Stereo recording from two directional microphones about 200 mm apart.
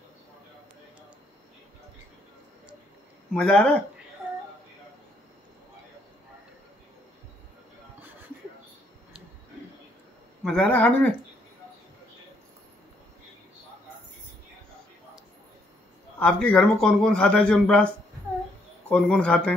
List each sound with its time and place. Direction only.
3.3 s a man's voice: 5° left (ahead or behind)
10.4 s a man's voice: 5° left (ahead or behind)
16.2 s a man's voice: 5° left (ahead or behind)